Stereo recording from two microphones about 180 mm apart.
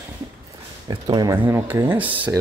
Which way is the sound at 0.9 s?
25° right (ahead or behind).